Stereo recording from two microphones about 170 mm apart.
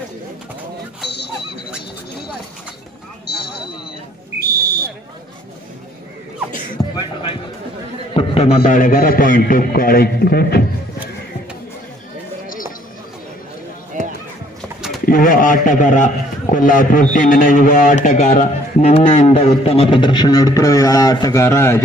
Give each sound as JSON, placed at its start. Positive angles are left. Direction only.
{"t": 4.4, "sound": "whistle", "side_deg": -60}
{"t": 7.0, "sound": "music", "side_deg": 30}
{"t": 8.1, "sound": "a man's voice", "side_deg": 35}
{"t": 14.0, "sound": "run", "side_deg": -45}
{"t": 14.6, "sound": "livestock", "side_deg": 0}
{"t": 15.0, "sound": "a man's voice", "side_deg": 55}